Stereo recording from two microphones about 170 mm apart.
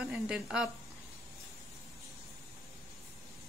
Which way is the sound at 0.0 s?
5° right (ahead or behind).